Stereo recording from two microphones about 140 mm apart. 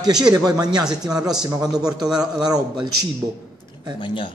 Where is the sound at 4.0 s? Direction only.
35° left (ahead or behind).